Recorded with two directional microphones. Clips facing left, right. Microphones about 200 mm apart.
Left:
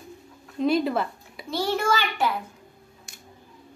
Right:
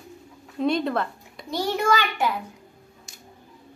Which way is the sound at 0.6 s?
5° left (ahead or behind).